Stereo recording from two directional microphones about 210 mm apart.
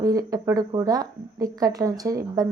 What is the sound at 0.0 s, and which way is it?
Speech, 15° right (ahead or behind).